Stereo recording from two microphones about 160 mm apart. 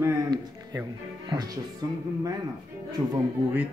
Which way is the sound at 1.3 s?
25° right (ahead or behind).